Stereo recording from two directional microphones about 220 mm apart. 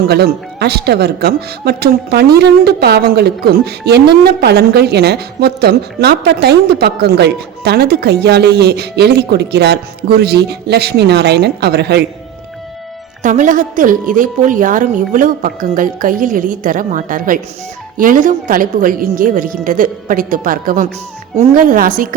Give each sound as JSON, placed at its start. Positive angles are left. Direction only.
{"t": 0.1, "sound": "speech", "side_deg": -45}
{"t": 13.2, "sound": "a woman's voice", "side_deg": -35}